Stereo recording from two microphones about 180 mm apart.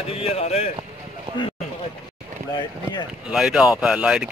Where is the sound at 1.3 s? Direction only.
30° right (ahead or behind).